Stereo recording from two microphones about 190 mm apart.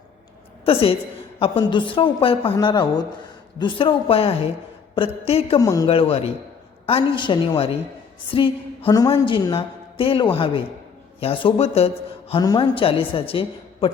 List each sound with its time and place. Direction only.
0.6 s a woman's voice: 30° left (ahead or behind)
5.5 s speech: 20° left (ahead or behind)
5.9 s a woman's voice: 30° left (ahead or behind)
12.3 s a woman's voice: 20° left (ahead or behind)